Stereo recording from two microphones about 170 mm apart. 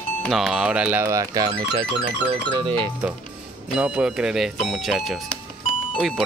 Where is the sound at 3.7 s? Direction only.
5° right (ahead or behind).